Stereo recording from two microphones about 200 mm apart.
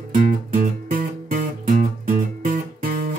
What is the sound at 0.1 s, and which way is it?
Music, 45° right (ahead or behind).